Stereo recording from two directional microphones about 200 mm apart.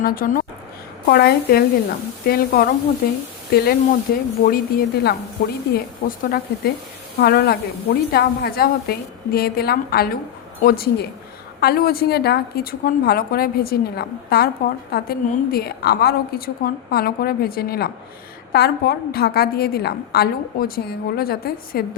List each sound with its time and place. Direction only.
0.0 s a woman's voice: 45° left (ahead or behind)